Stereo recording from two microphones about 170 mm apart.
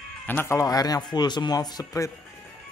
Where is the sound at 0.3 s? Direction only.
15° left (ahead or behind).